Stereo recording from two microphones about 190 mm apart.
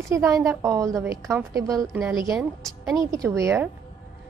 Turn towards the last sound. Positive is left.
turn(degrees=-15)  # may be behind; listen again after turning